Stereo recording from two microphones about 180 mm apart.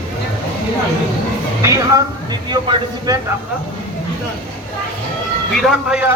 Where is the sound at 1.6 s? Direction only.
15° right (ahead or behind).